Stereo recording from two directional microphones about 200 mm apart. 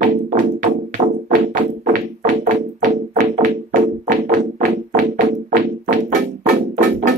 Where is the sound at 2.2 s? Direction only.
40° right (ahead or behind).